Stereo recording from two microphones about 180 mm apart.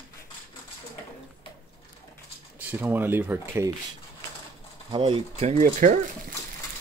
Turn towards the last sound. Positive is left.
turn(degrees=-45)  # may be behind; listen again after turning